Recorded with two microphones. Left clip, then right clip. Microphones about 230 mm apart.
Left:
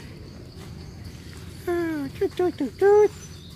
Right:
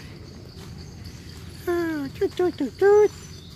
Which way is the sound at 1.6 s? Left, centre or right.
Centre.